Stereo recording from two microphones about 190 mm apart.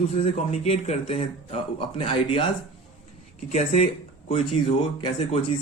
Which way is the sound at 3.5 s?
35° left (ahead or behind).